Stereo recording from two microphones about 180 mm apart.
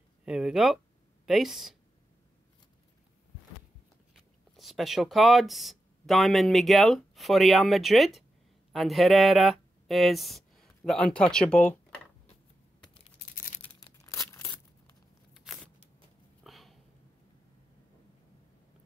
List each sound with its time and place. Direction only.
0.2 s speech: 5° right (ahead or behind)
4.1 s speech: centre (ahead or behind)
13.2 s a sound: 50° left (ahead or behind)
13.6 s crumpling: 20° left (ahead or behind)
15.3 s a sound: centre (ahead or behind)
16.4 s sniff: centre (ahead or behind)